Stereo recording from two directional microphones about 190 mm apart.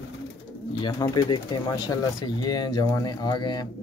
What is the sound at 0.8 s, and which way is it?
Speech, 25° left (ahead or behind).